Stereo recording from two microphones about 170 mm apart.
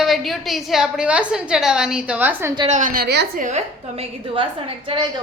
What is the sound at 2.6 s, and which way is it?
Speech, 45° right (ahead or behind).